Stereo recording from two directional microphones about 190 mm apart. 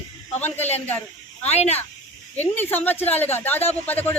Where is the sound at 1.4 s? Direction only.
35° left (ahead or behind).